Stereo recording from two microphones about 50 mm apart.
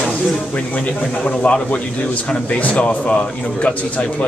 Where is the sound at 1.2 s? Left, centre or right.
Left.